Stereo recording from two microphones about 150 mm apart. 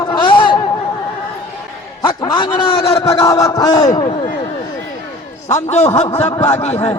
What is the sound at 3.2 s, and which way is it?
Speech, 25° left (ahead or behind).